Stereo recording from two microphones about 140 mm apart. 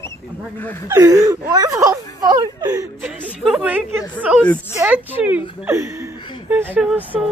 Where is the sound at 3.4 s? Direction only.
10° right (ahead or behind).